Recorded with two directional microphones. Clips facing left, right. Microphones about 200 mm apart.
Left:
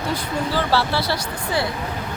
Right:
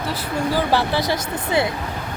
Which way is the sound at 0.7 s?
15° right (ahead or behind).